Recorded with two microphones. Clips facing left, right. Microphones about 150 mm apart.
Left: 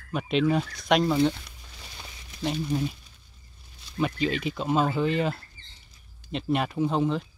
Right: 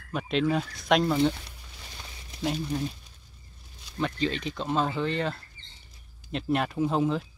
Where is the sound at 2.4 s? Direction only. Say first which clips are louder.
Left 2 dB; 5° left (ahead or behind).